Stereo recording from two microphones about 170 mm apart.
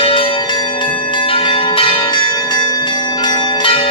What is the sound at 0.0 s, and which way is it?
Church bell, 30° left (ahead or behind).